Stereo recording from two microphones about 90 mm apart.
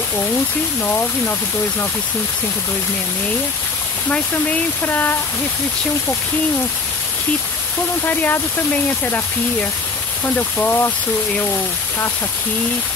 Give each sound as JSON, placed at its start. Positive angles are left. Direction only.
{"t": 0.8, "sound": "speech", "side_deg": 25}
{"t": 4.1, "sound": "speech", "side_deg": 15}
{"t": 8.0, "sound": "speech", "side_deg": 20}